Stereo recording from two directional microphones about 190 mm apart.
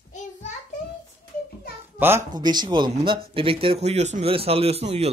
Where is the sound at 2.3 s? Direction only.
20° right (ahead or behind).